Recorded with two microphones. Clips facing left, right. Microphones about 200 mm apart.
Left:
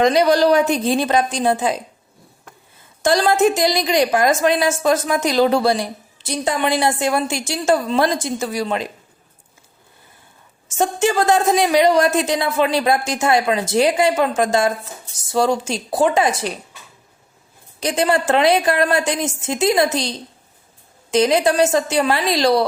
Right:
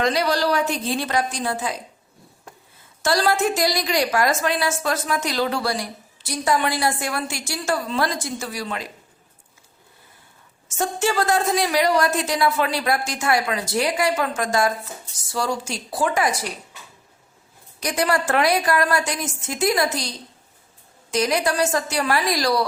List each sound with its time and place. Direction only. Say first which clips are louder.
0.0 s speech: left 7 dB; 20° left (ahead or behind)
3.0 s speech: left 5 dB; 20° left (ahead or behind)
10.8 s speech: left 4 dB; 20° left (ahead or behind)
17.7 s speech: left 4 dB; 25° left (ahead or behind)